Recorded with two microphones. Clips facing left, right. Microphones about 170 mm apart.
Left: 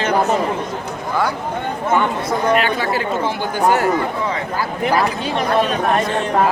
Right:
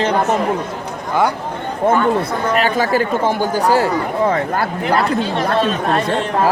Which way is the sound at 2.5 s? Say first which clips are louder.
Right 3 dB; 40° right (ahead or behind).